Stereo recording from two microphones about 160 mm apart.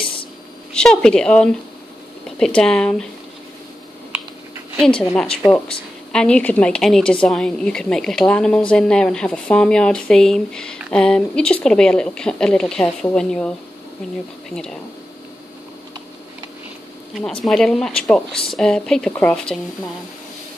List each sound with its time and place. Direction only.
0.7 s a woman's voice: 5° left (ahead or behind)
4.7 s a woman's voice: 5° left (ahead or behind)
14.5 s a woman's voice: 5° left (ahead or behind)
17.5 s a woman's voice: 5° left (ahead or behind)